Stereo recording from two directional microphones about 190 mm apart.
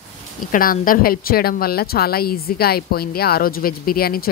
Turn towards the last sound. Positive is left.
turn(degrees=50)  # may be behind; listen again after turning